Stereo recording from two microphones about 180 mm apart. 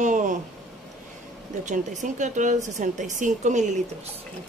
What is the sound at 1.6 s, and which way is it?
Speech, 45° right (ahead or behind).